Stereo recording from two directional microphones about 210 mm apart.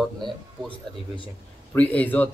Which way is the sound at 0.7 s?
25° left (ahead or behind).